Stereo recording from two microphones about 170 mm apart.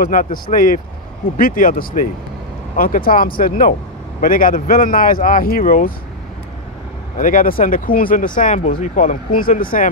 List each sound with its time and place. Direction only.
0.0 s speech: 55° left (ahead or behind)
7.2 s speech: 50° left (ahead or behind)